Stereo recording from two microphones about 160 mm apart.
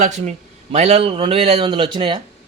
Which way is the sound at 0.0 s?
45° right (ahead or behind).